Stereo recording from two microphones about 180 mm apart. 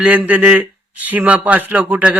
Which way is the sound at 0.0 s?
10° right (ahead or behind).